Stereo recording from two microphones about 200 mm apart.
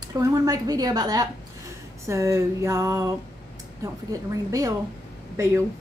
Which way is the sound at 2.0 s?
15° right (ahead or behind).